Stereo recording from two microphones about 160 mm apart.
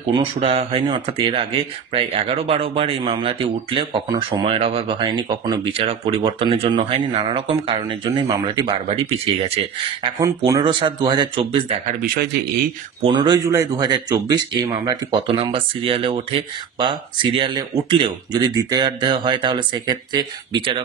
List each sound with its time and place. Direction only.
0.1 s speech: 35° right (ahead or behind)
5.7 s speech: 40° right (ahead or behind)
10.2 s speech: 20° right (ahead or behind)
12.0 s a man's voice: 90° right
13.0 s speech: 30° right (ahead or behind)